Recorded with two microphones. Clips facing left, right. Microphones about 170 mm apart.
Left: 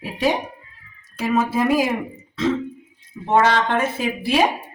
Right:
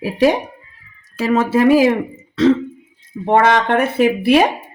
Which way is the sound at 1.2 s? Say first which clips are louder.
Right 6 dB; 90° right.